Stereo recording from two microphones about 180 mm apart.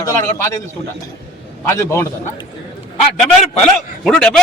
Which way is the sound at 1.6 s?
15° left (ahead or behind).